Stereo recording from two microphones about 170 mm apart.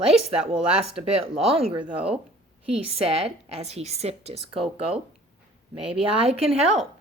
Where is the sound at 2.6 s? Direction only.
35° right (ahead or behind).